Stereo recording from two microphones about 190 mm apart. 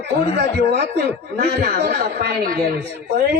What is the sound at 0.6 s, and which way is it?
A man's voice, 65° right (ahead or behind).